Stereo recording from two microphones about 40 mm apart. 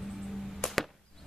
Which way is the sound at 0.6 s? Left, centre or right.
Centre.